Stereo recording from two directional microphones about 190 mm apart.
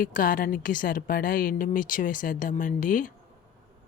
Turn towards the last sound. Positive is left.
turn(degrees=45)  # may be behind; listen again after turning